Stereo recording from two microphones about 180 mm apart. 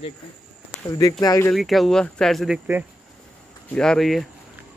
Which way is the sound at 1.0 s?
20° left (ahead or behind).